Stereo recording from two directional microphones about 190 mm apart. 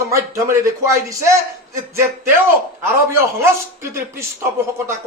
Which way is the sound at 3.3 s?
15° right (ahead or behind).